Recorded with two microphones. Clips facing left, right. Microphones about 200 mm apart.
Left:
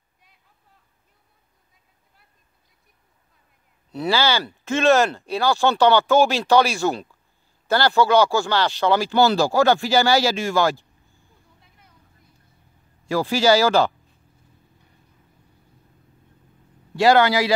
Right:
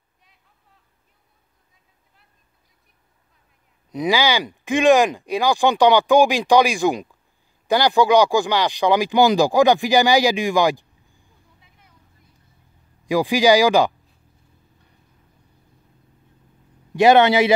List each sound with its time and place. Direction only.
3.9 s speech: 15° right (ahead or behind)
13.0 s speech: 15° right (ahead or behind)
16.9 s a man's voice: 20° right (ahead or behind)